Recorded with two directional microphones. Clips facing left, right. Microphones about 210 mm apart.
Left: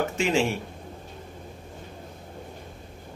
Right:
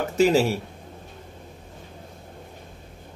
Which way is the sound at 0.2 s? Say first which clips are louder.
Right 7 dB; 40° right (ahead or behind).